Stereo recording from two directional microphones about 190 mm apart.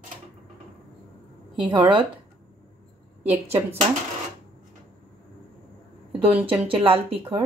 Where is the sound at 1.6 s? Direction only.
25° right (ahead or behind).